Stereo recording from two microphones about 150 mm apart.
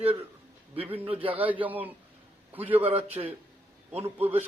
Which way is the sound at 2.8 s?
40° right (ahead or behind).